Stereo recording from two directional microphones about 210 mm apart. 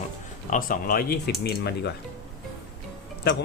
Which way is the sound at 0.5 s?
40° left (ahead or behind).